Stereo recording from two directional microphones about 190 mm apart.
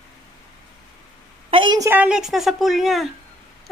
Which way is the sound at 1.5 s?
25° right (ahead or behind).